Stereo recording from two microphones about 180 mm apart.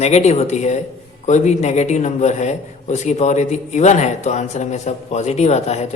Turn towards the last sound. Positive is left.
turn(degrees=35)  # may be behind; listen again after turning